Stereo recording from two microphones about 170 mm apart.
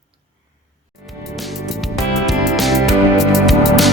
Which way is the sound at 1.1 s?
Centre (ahead or behind).